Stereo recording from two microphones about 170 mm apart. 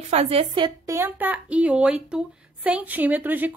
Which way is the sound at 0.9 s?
10° right (ahead or behind).